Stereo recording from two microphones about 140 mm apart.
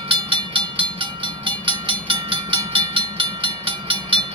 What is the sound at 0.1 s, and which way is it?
Train, 35° right (ahead or behind).